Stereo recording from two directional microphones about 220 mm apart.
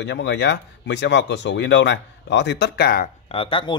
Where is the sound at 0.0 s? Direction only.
50° left (ahead or behind).